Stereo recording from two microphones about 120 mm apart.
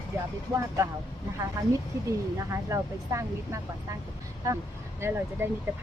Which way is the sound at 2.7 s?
25° right (ahead or behind).